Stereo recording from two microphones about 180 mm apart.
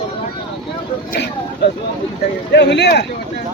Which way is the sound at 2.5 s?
70° left (ahead or behind).